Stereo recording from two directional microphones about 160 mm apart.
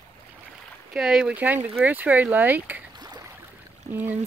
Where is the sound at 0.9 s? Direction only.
5° right (ahead or behind).